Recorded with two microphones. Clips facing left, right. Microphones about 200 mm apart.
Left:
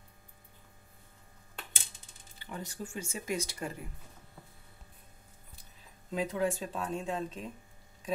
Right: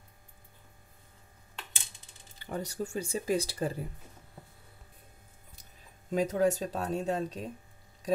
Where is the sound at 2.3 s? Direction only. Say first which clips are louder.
Right 6 dB; 40° right (ahead or behind).